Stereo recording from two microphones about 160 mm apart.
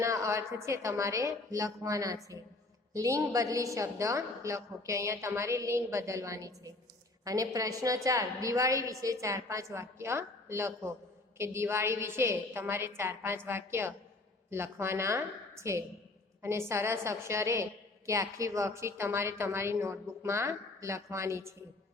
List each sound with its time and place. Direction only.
0.0 s a woman's voice: 20° right (ahead or behind)